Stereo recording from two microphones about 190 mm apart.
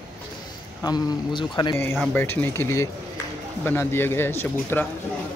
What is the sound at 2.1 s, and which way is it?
A man's voice, 10° left (ahead or behind).